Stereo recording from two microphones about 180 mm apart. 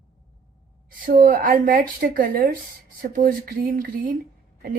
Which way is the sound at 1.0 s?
50° right (ahead or behind).